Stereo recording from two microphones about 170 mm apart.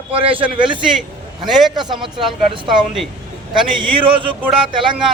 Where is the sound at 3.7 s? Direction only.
30° right (ahead or behind).